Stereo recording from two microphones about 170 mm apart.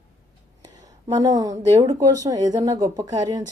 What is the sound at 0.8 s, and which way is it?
A woman's voice, 20° right (ahead or behind).